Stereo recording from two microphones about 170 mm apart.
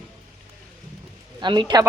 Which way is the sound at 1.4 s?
25° right (ahead or behind).